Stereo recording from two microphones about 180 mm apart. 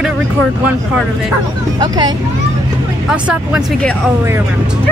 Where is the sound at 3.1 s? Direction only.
5° right (ahead or behind).